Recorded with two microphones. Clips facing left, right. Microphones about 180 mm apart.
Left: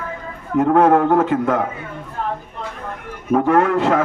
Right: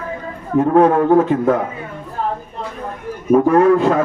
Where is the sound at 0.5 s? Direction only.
90° left.